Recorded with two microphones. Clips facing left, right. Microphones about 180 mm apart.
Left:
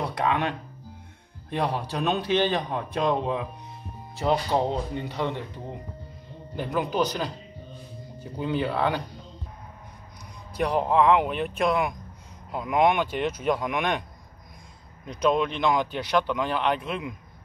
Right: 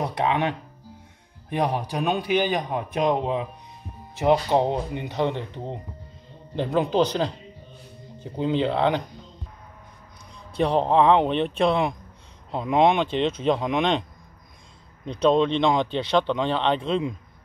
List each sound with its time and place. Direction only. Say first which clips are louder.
0.0 s a man's voice: right 2 dB; 20° right (ahead or behind)
10.5 s speech: right 3 dB; 30° right (ahead or behind)
15.0 s speech: right 4 dB; 30° right (ahead or behind)